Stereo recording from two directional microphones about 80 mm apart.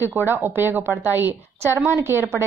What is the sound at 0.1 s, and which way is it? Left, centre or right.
A woman's voice, right.